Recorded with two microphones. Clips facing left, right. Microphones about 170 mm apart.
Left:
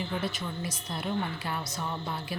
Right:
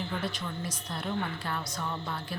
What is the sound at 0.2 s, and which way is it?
A woman's voice, 10° left (ahead or behind).